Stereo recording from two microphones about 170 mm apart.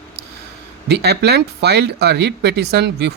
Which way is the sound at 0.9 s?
75° right (ahead or behind).